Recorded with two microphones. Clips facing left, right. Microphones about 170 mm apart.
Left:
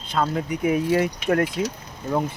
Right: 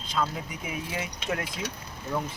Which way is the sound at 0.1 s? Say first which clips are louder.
Left 7 dB; 60° left (ahead or behind).